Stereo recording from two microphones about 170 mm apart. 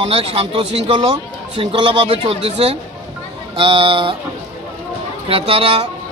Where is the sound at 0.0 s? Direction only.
35° right (ahead or behind).